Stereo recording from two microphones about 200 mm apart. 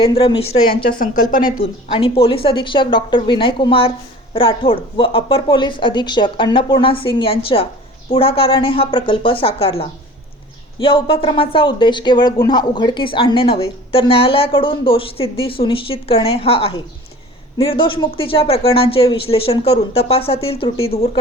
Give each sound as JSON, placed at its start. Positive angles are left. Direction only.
{"t": 0.0, "sound": "speech", "side_deg": 25}
{"t": 0.9, "sound": "speech", "side_deg": 45}
{"t": 1.9, "sound": "speech", "side_deg": 25}